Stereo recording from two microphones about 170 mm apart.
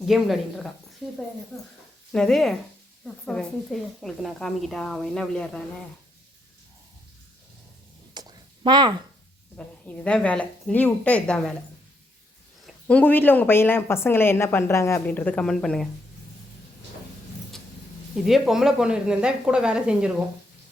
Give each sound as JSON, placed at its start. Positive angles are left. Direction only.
{"t": 0.0, "sound": "speech", "side_deg": 0}
{"t": 8.1, "sound": "a sound", "side_deg": -25}
{"t": 9.6, "sound": "a woman's voice", "side_deg": 5}
{"t": 12.6, "sound": "a woman's voice", "side_deg": 10}
{"t": 18.3, "sound": "speech", "side_deg": 0}